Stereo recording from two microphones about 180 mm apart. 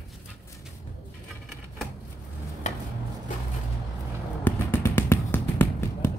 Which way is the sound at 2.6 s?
40° left (ahead or behind).